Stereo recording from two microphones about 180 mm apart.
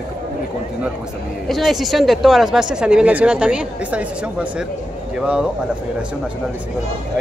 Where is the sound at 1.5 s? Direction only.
Centre (ahead or behind).